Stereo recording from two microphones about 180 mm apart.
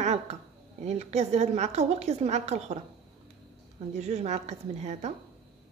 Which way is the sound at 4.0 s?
35° right (ahead or behind).